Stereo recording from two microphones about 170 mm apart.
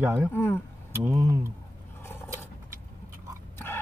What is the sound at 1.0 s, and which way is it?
Speech, 15° right (ahead or behind).